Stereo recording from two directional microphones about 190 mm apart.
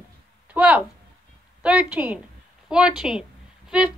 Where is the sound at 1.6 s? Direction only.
5° right (ahead or behind).